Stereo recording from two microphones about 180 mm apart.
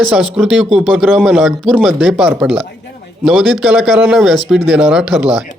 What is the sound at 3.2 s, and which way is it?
Speech, centre (ahead or behind).